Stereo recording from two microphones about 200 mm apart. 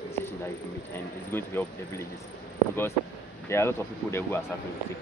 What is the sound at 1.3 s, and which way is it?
Speech, 10° left (ahead or behind).